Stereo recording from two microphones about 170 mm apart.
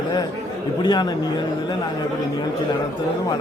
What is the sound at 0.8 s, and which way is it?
Speech, 25° left (ahead or behind).